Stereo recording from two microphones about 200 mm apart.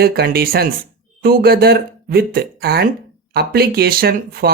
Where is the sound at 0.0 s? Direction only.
50° right (ahead or behind).